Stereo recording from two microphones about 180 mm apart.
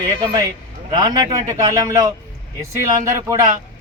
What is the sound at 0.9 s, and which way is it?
A man's voice, 20° right (ahead or behind).